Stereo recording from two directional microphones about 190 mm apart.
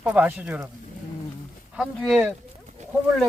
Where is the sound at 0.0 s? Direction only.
10° right (ahead or behind).